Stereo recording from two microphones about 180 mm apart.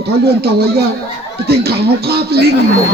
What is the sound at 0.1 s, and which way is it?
Speech, 65° right (ahead or behind).